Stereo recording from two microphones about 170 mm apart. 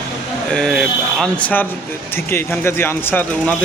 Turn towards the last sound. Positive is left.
turn(degrees=10)  # may be behind; listen again after turning